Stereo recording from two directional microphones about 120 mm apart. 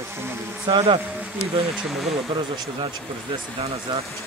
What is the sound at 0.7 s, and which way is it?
Speech, 35° right (ahead or behind).